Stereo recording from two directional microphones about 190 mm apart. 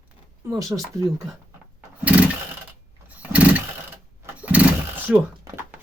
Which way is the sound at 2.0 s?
5° right (ahead or behind).